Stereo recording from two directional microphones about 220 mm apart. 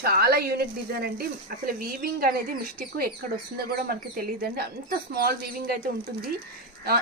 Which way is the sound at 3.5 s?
45° right (ahead or behind).